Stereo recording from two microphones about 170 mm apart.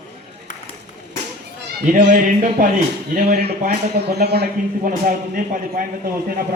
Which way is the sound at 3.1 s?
65° right (ahead or behind).